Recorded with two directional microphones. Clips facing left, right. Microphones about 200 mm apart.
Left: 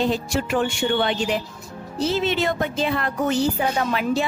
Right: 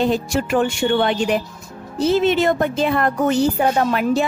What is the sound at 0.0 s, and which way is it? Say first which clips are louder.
Speech: right 3 dB; 50° right (ahead or behind).